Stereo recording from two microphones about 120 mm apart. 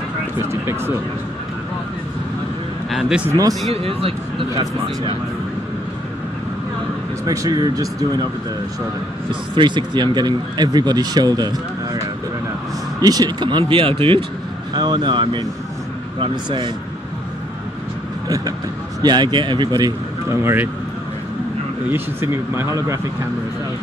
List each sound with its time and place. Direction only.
0.4 s a man's voice: 20° right (ahead or behind)
2.9 s speech: centre (ahead or behind)
3.3 s a man's voice: 30° right (ahead or behind)
3.7 s speech: 50° right (ahead or behind)
7.2 s a man's voice: 30° right (ahead or behind)
9.6 s speech: 40° right (ahead or behind)
13.0 s speech: 35° right (ahead or behind)
14.7 s speech: 35° right (ahead or behind)
18.9 s speech: 35° right (ahead or behind)
20.2 s a man's voice: 20° right (ahead or behind)
21.8 s a man's voice: 20° right (ahead or behind)